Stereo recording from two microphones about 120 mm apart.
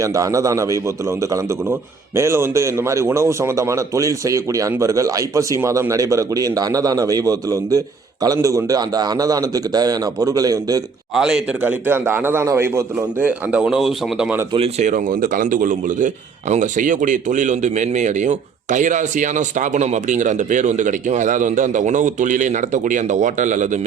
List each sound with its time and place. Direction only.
0.0 s a man's voice: 25° right (ahead or behind)
11.1 s a man's voice: 5° right (ahead or behind); by 13.1 s 20° right (ahead or behind)
13.1 s speech: 10° right (ahead or behind)
14.8 s a man's voice: 90° right